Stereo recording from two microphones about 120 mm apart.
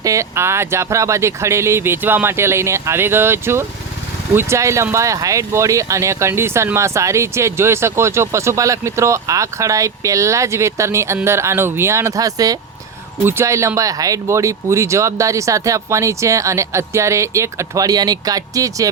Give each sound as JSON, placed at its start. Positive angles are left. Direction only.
{"t": 0.0, "sound": "speech", "side_deg": -25}